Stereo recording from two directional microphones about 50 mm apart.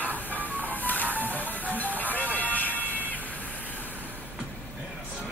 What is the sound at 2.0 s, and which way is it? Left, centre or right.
Vehicle, left.